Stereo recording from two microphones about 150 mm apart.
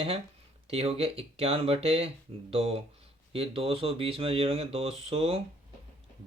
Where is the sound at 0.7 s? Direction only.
40° right (ahead or behind).